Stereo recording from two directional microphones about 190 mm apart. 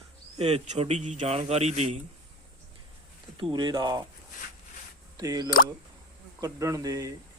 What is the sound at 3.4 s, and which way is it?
Speech, 25° right (ahead or behind).